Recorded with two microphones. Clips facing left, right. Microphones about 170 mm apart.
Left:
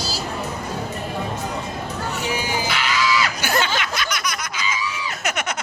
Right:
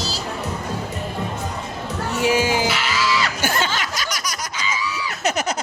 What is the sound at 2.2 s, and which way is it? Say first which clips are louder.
Music: right 8 dB; 90° right.